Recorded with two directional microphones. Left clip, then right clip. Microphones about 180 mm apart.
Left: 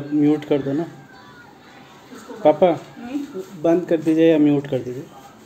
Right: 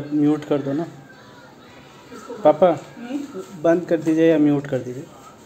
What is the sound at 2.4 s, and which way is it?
A man's voice, 5° left (ahead or behind).